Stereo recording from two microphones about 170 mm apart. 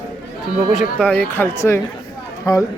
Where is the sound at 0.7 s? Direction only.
5° left (ahead or behind).